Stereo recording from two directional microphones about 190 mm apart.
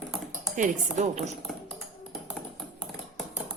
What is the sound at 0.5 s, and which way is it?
Speech, 40° right (ahead or behind).